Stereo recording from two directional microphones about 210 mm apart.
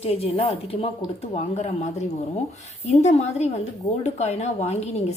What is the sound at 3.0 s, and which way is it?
A woman's voice, 30° left (ahead or behind).